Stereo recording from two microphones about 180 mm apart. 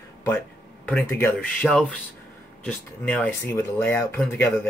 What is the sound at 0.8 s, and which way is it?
Speech, 10° left (ahead or behind).